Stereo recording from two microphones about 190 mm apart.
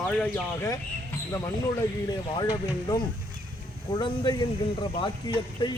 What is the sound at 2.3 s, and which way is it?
Speech, 25° left (ahead or behind).